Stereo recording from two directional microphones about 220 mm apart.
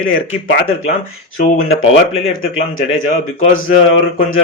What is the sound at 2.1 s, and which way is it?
Speech, 65° left (ahead or behind).